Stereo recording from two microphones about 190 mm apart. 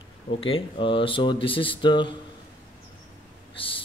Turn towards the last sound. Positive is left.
turn(degrees=30)  # may be behind; listen again after turning